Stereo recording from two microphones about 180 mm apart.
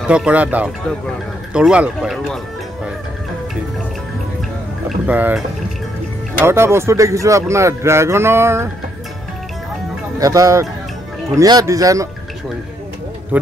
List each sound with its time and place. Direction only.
0.1 s speech: 5° right (ahead or behind)
4.8 s a sound: 10° right (ahead or behind)
6.4 s speech: 15° right (ahead or behind)
10.1 s speech: 20° right (ahead or behind)
13.3 s speech: 10° right (ahead or behind)